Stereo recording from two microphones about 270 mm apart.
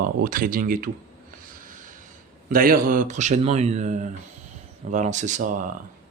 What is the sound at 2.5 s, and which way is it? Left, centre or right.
Speech, right.